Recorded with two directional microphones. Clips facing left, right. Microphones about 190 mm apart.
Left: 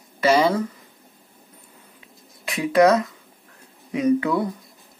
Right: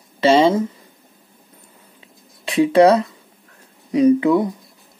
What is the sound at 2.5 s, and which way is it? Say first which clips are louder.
Speech: right 4 dB; 30° right (ahead or behind).